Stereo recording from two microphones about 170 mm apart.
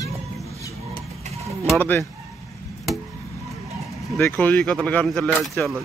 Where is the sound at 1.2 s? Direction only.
40° right (ahead or behind).